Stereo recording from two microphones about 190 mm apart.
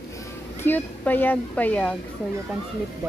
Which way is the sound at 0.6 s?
10° left (ahead or behind).